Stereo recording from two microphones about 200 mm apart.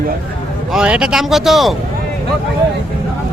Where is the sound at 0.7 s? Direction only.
5° right (ahead or behind).